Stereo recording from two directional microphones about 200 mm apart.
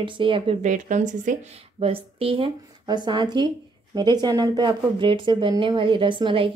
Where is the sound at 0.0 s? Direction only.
25° right (ahead or behind).